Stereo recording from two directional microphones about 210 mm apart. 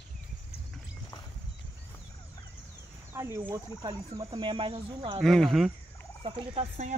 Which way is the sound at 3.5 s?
15° right (ahead or behind).